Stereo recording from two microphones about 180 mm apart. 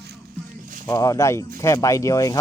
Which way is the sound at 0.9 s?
20° left (ahead or behind).